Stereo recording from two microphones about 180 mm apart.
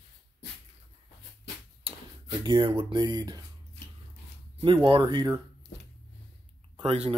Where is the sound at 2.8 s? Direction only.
25° right (ahead or behind).